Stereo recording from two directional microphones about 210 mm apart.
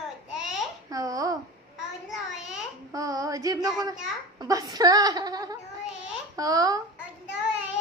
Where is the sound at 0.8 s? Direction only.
15° right (ahead or behind).